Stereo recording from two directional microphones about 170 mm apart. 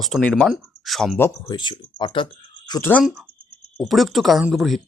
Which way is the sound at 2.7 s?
15° left (ahead or behind).